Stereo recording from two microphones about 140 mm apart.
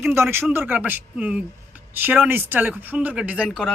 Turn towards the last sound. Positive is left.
turn(degrees=-5)  # may be behind; listen again after turning